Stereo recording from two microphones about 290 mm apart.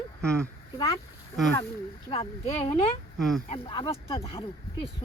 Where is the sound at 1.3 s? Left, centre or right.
Centre.